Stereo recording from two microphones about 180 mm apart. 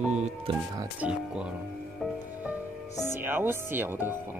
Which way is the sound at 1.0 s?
5° right (ahead or behind).